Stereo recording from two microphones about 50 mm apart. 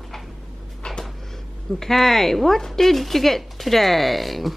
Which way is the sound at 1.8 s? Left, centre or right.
Centre.